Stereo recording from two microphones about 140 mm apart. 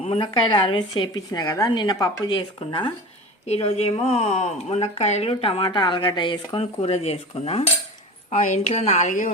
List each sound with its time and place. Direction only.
0.0 s a woman's voice: 40° left (ahead or behind)
3.4 s speech: 50° left (ahead or behind)
8.3 s speech: 60° left (ahead or behind)